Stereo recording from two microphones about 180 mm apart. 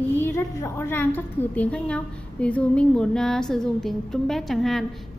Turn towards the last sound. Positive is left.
turn(degrees=0)  # may be behind; listen again after turning